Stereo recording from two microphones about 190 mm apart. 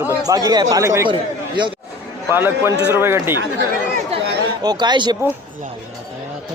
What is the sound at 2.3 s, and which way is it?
Speech, 10° right (ahead or behind).